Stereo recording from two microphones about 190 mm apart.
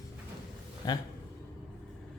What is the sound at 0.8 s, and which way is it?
Speech, 20° left (ahead or behind).